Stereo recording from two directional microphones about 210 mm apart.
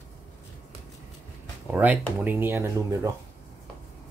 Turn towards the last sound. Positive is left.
turn(degrees=-15)  # may be behind; listen again after turning